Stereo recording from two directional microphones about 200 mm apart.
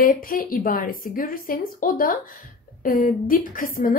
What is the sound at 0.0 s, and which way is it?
Speech, 45° left (ahead or behind).